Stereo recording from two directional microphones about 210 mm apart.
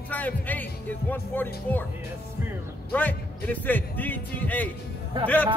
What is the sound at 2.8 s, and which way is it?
Speech, 10° left (ahead or behind).